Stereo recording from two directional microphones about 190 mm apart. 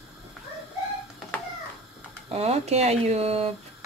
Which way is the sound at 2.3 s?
35° right (ahead or behind).